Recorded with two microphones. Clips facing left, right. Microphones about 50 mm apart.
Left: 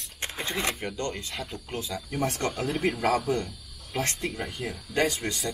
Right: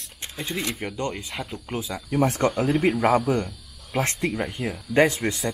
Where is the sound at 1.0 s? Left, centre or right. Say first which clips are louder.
Right 3 dB; centre.